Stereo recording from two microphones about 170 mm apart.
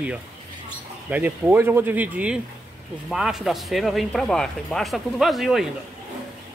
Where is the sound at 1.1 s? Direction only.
10° right (ahead or behind).